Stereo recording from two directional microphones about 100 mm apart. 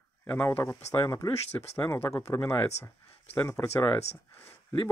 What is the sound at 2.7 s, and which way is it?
Speech, 90° left.